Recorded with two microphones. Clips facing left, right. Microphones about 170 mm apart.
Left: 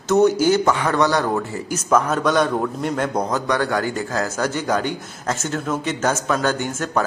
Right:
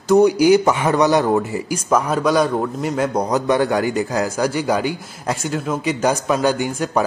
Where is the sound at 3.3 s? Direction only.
20° right (ahead or behind).